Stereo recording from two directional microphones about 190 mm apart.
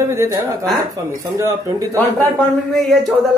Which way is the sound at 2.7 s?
Centre (ahead or behind).